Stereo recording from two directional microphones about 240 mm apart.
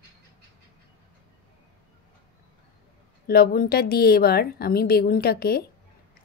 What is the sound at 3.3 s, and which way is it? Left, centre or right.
A woman's voice, left.